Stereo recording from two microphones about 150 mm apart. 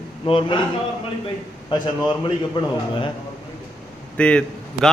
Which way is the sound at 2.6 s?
35° left (ahead or behind).